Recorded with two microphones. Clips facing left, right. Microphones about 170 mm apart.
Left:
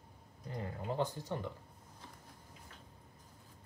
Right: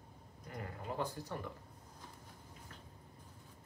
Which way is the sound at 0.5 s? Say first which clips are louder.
Left 4 dB; 25° left (ahead or behind).